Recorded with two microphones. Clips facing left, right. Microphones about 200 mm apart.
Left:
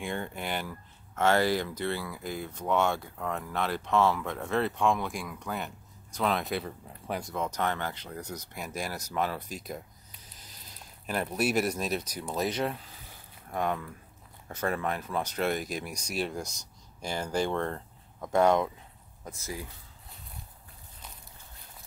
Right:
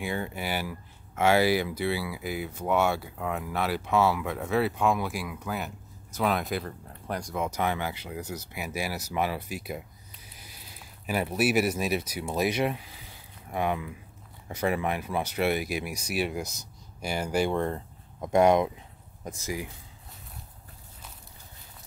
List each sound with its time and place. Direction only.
0.0 s speech: 5° right (ahead or behind)
7.4 s speech: 10° right (ahead or behind)